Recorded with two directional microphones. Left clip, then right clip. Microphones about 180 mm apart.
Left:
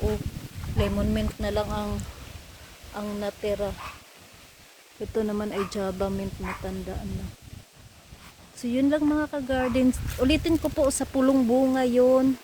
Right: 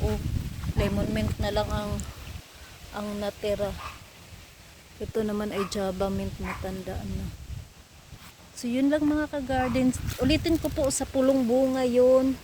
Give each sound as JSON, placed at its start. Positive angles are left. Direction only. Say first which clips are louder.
{"t": 0.8, "sound": "speech", "louder": "left 1 dB", "side_deg": 15}
{"t": 2.9, "sound": "speech", "louder": "left 1 dB", "side_deg": 0}
{"t": 5.1, "sound": "speech", "louder": "left 1 dB", "side_deg": 0}
{"t": 8.6, "sound": "speech", "louder": "left 1 dB", "side_deg": 5}
{"t": 9.1, "sound": "speech", "louder": "left 1 dB", "side_deg": 20}